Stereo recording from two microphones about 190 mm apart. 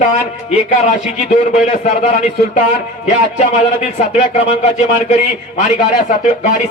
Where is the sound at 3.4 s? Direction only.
35° left (ahead or behind).